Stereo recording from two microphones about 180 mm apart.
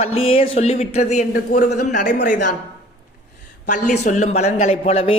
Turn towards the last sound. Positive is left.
turn(degrees=30)  # may be behind; listen again after turning